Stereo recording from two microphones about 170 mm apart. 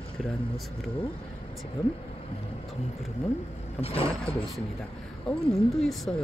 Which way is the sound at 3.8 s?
35° left (ahead or behind).